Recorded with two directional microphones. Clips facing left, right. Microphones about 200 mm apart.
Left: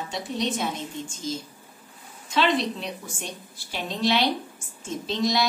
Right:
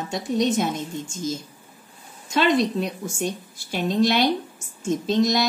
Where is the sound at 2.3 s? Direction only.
45° right (ahead or behind).